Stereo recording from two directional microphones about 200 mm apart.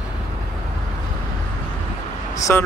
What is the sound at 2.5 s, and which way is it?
Speech, 10° left (ahead or behind).